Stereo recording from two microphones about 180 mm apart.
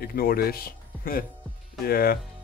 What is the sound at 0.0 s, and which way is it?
Speech, 55° left (ahead or behind).